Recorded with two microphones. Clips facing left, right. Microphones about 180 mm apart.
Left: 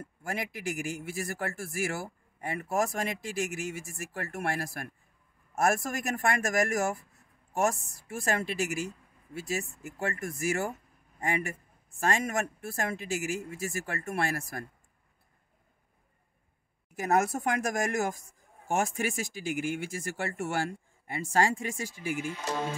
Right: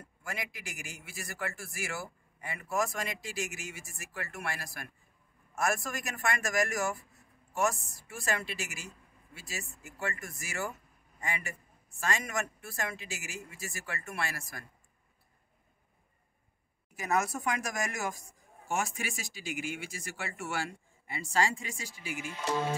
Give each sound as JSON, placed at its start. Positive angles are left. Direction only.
{"t": 0.0, "sound": "a man's voice", "side_deg": 50}
{"t": 16.9, "sound": "a man's voice", "side_deg": 55}